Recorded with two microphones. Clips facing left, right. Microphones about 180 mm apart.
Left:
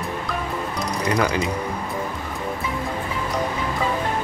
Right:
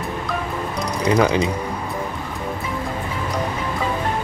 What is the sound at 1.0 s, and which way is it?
Speech, 20° right (ahead or behind).